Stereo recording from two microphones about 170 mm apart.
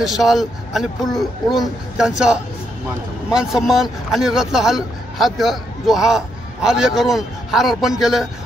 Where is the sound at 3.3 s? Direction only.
5° right (ahead or behind).